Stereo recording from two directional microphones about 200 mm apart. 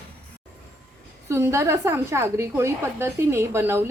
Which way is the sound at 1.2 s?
15° right (ahead or behind).